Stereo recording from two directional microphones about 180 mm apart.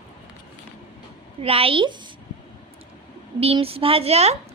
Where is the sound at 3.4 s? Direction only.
30° right (ahead or behind).